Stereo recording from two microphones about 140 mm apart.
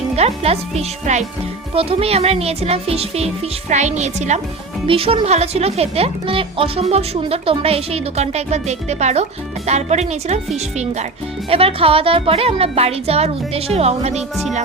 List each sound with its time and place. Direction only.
0.2 s a woman's voice: 50° right (ahead or behind)
1.7 s a woman's voice: 45° right (ahead or behind)
4.9 s speech: 40° right (ahead or behind)
11.4 s speech: 45° right (ahead or behind)